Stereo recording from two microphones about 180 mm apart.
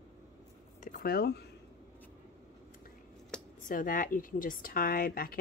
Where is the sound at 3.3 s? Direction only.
5° left (ahead or behind).